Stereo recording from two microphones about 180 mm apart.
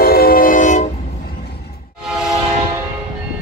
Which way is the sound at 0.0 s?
55° left (ahead or behind).